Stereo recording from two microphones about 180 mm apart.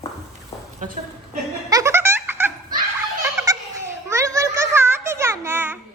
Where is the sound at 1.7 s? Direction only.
15° right (ahead or behind).